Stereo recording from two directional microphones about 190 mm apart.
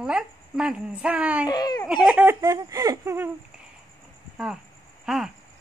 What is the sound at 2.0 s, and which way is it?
Speech, 10° right (ahead or behind).